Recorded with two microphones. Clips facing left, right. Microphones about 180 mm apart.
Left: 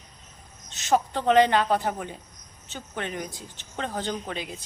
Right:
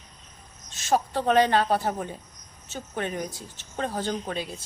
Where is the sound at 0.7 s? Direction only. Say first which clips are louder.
Even; 20° left (ahead or behind).